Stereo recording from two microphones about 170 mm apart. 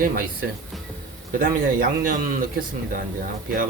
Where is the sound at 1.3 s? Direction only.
55° right (ahead or behind).